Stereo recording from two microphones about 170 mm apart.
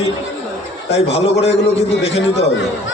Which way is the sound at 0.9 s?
35° left (ahead or behind).